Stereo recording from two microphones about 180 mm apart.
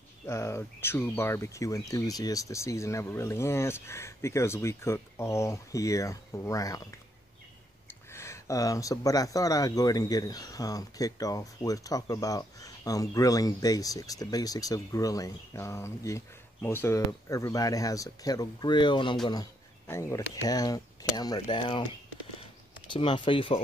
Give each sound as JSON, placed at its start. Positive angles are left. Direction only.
{"t": 0.3, "sound": "speech", "side_deg": 15}
{"t": 8.1, "sound": "speech", "side_deg": 15}
{"t": 19.9, "sound": "speech", "side_deg": 15}
{"t": 22.9, "sound": "speech", "side_deg": 30}